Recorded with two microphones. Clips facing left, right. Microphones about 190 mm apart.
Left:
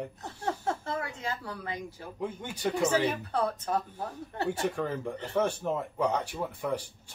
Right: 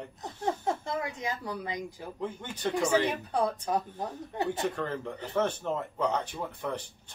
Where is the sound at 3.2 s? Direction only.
15° right (ahead or behind).